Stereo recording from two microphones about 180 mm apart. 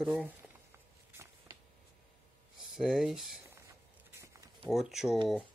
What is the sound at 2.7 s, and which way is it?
Speech, centre (ahead or behind).